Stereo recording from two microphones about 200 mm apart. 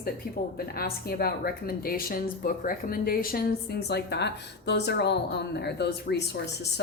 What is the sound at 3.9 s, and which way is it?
Speech, 55° left (ahead or behind).